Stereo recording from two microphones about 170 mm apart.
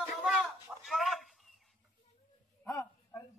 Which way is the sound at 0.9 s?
Centre (ahead or behind).